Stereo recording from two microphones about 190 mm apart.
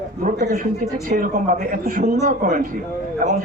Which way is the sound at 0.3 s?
45° right (ahead or behind).